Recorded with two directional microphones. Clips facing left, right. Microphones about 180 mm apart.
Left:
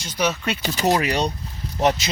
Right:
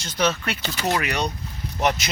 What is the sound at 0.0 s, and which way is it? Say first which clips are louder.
Speech: even; 10° left (ahead or behind).